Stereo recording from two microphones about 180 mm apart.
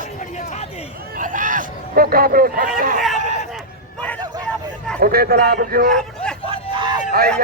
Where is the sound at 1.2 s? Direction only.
45° right (ahead or behind).